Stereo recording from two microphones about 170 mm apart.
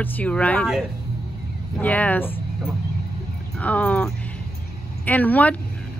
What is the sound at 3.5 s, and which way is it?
Speech, 10° left (ahead or behind).